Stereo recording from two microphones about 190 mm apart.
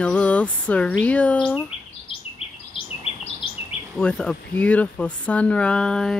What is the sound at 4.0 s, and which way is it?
Speech, 5° left (ahead or behind).